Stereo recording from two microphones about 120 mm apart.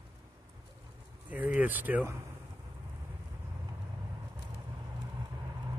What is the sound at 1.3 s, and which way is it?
Speech, 15° right (ahead or behind).